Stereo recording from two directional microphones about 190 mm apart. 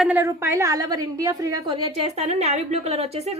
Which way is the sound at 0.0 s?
5° right (ahead or behind).